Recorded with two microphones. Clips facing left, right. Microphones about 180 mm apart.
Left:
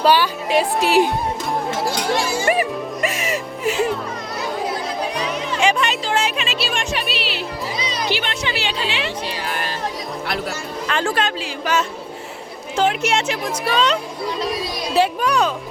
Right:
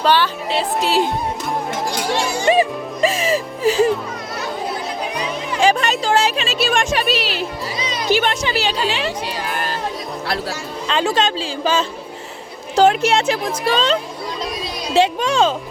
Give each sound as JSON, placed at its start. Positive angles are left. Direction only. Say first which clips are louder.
{"t": 0.0, "sound": "speech", "louder": "even", "side_deg": 10}
{"t": 2.4, "sound": "music", "louder": "right 3 dB", "side_deg": -25}
{"t": 5.5, "sound": "speech", "louder": "right 3 dB", "side_deg": -35}
{"t": 6.6, "sound": "music", "louder": "right 8 dB", "side_deg": -50}
{"t": 8.1, "sound": "speech", "louder": "right 6 dB", "side_deg": -45}
{"t": 10.8, "sound": "a child's voice", "louder": "right 3 dB", "side_deg": -20}